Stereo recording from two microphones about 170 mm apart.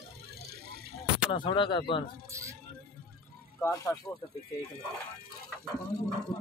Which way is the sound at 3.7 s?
20° left (ahead or behind).